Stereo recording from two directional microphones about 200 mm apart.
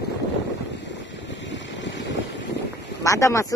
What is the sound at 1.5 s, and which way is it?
Vehicle, 65° left (ahead or behind).